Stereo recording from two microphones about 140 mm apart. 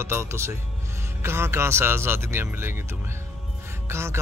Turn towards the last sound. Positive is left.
turn(degrees=-20)  # may be behind; listen again after turning